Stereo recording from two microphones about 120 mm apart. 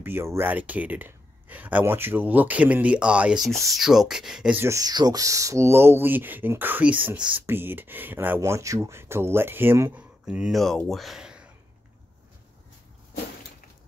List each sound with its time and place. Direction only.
0.0 s speech: 20° right (ahead or behind)
4.6 s speech: 25° right (ahead or behind)
10.2 s speech: 5° right (ahead or behind)